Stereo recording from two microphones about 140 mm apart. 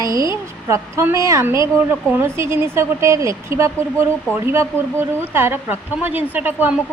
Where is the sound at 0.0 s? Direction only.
25° right (ahead or behind).